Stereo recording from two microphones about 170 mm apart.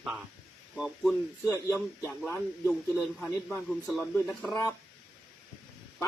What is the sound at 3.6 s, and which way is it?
Speech, 5° right (ahead or behind).